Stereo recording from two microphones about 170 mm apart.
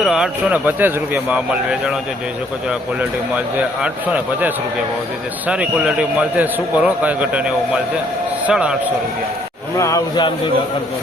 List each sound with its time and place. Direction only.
0.0 s a man's voice: 5° right (ahead or behind)
3.3 s a man's voice: 5° right (ahead or behind)
9.7 s speech: 20° left (ahead or behind)